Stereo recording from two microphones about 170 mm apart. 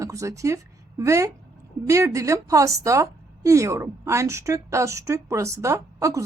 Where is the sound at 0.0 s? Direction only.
20° right (ahead or behind).